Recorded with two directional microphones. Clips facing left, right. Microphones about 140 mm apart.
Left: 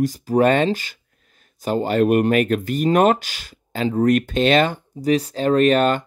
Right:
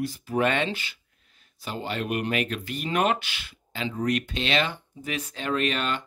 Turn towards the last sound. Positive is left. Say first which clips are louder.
# left 11 dB
turn(degrees=45)  # may be behind; listen again after turning